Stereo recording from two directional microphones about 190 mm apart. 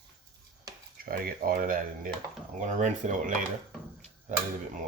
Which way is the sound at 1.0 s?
50° right (ahead or behind).